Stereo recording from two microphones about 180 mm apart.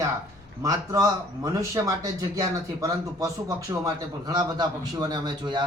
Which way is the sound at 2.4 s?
20° right (ahead or behind).